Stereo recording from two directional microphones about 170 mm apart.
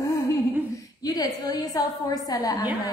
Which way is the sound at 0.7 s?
20° left (ahead or behind).